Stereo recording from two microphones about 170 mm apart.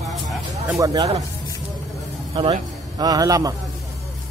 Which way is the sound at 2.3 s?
30° right (ahead or behind).